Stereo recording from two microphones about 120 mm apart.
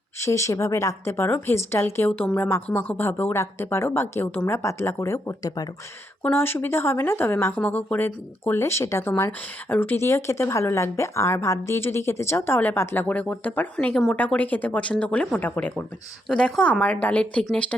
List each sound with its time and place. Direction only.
0.2 s speech: 25° left (ahead or behind)